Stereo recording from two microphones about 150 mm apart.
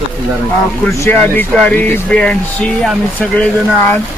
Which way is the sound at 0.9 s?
20° left (ahead or behind).